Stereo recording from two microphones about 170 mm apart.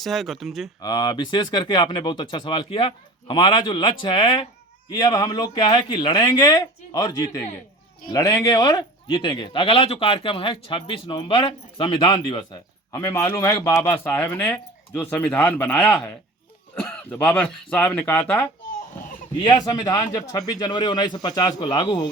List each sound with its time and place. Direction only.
0.0 s speech: centre (ahead or behind)
0.8 s speech: 25° left (ahead or behind)
12.9 s speech: 15° left (ahead or behind)
19.4 s speech: 25° left (ahead or behind)